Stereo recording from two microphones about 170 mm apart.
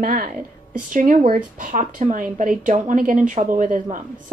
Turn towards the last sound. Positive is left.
turn(degrees=-50)  # may be behind; listen again after turning